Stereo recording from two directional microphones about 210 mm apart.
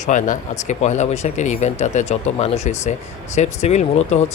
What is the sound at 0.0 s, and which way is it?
Speech, 35° left (ahead or behind).